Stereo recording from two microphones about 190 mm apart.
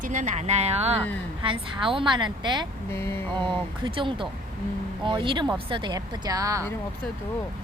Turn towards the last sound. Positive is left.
turn(degrees=-15)  # may be behind; listen again after turning